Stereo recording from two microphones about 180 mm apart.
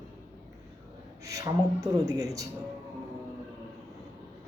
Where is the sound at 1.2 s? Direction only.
20° right (ahead or behind).